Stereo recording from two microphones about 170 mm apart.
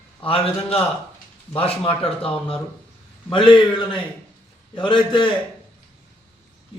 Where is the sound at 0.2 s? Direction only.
35° left (ahead or behind).